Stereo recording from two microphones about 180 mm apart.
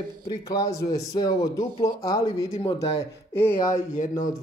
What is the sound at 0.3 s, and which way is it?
Speech, 20° left (ahead or behind).